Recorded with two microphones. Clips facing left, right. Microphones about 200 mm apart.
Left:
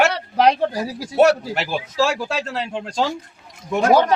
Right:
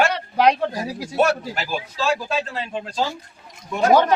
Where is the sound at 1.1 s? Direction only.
70° left (ahead or behind).